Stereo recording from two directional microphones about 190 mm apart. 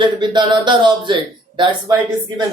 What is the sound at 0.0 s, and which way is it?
Speech, 25° right (ahead or behind).